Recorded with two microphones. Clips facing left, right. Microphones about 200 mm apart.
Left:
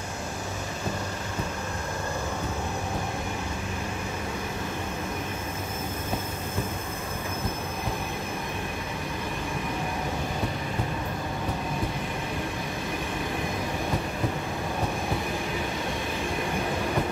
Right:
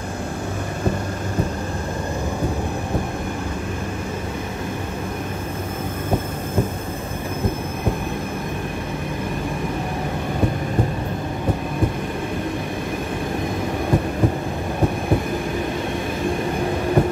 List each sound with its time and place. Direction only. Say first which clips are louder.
17.0 s train: right 12 dB; 50° right (ahead or behind)